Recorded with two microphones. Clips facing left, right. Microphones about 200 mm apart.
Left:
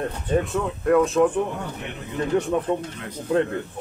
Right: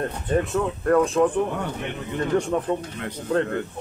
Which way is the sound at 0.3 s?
Centre (ahead or behind).